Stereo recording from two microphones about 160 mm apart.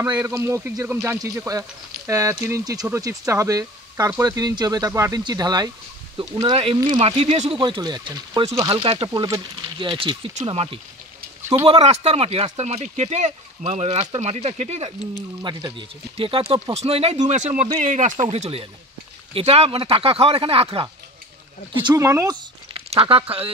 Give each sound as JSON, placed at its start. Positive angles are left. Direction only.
{"t": 0.1, "sound": "speech", "side_deg": -20}
{"t": 6.4, "sound": "speech", "side_deg": -35}
{"t": 15.5, "sound": "speech", "side_deg": -30}
{"t": 21.8, "sound": "speech", "side_deg": -20}
{"t": 22.8, "sound": "speech", "side_deg": -35}